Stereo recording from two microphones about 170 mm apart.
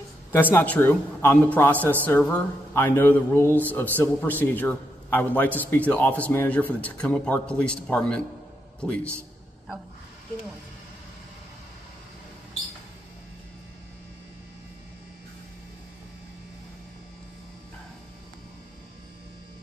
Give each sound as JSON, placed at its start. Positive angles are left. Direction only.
{"t": 0.3, "sound": "a man's voice", "side_deg": 10}